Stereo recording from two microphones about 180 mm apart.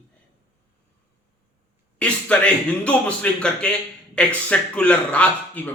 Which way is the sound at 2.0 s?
5° left (ahead or behind).